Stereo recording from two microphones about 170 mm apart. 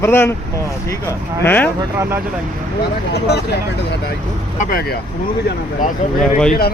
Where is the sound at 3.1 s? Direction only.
75° left (ahead or behind).